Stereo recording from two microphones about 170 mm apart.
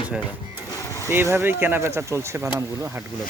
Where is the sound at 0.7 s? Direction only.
15° left (ahead or behind).